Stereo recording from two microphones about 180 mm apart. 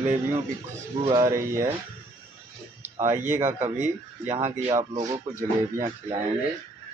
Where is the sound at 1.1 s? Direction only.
15° right (ahead or behind).